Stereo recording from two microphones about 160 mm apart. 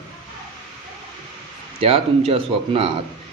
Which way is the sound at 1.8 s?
35° right (ahead or behind).